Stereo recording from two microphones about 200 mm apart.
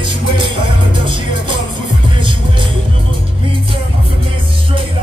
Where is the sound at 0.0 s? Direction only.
25° right (ahead or behind).